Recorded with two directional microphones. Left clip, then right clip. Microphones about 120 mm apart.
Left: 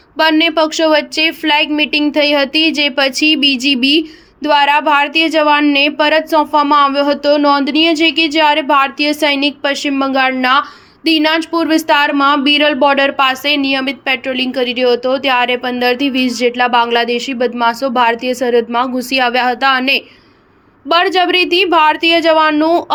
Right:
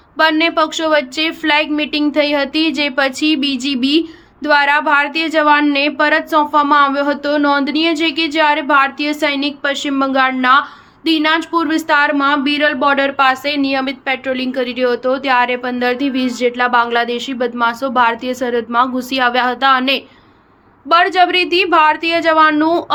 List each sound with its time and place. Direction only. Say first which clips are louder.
0.2 s a woman's voice: left 2 dB; 35° left (ahead or behind)